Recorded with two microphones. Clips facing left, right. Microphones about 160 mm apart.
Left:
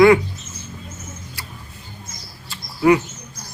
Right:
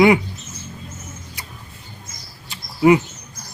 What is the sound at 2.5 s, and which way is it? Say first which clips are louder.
Bird: right 1 dB; 20° right (ahead or behind).